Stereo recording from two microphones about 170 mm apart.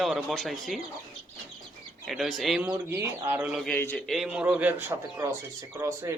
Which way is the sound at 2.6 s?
15° right (ahead or behind).